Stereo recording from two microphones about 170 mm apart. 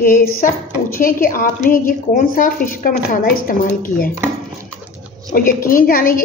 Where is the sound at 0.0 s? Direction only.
60° left (ahead or behind).